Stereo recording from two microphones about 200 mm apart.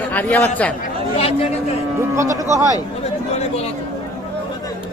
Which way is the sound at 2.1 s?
15° right (ahead or behind).